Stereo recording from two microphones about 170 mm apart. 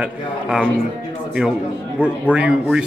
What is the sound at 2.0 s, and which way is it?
Speech, 5° right (ahead or behind).